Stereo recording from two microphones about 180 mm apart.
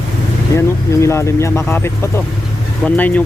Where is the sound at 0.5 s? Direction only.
15° left (ahead or behind).